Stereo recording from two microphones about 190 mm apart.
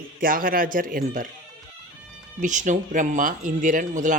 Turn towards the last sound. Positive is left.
turn(degrees=-40)  # may be behind; listen again after turning